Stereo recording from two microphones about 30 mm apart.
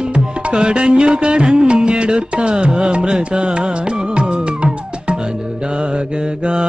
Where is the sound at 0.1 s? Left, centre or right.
Right.